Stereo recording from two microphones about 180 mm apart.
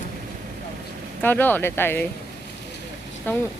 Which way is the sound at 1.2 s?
10° left (ahead or behind).